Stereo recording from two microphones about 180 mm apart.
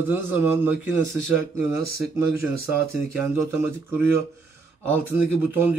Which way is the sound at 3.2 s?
15° right (ahead or behind).